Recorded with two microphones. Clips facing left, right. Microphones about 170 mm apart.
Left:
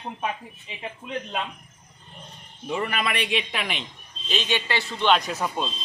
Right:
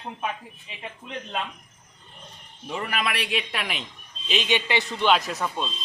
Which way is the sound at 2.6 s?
Centre (ahead or behind).